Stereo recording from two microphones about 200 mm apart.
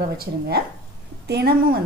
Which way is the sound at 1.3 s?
50° right (ahead or behind).